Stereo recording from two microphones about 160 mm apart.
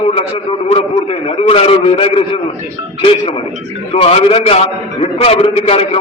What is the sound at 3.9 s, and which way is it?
A man's voice, 40° left (ahead or behind).